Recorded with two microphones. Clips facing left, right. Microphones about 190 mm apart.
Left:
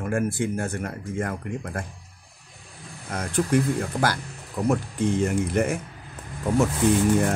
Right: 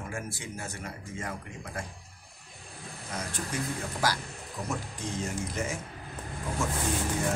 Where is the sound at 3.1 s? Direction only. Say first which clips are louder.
Left 12 dB; 55° left (ahead or behind).